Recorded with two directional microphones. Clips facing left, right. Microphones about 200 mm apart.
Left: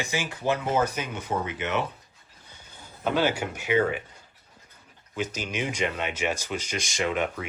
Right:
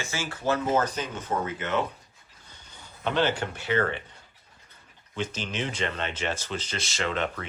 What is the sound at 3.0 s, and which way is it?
Speech, 10° left (ahead or behind).